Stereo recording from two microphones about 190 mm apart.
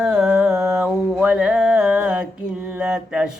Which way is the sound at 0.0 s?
5° right (ahead or behind).